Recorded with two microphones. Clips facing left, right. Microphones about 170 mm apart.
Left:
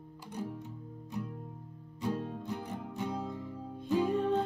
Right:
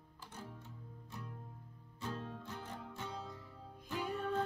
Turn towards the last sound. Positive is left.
turn(degrees=30)  # may be behind; listen again after turning